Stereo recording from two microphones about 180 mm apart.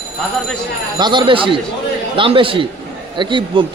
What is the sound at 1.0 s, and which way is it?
Speech, 25° right (ahead or behind).